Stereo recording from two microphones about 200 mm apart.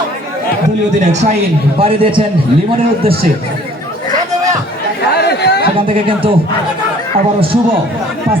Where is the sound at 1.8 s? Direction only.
25° right (ahead or behind).